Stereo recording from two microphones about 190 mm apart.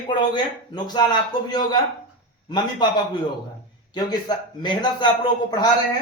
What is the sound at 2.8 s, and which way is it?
A man's voice, 25° left (ahead or behind).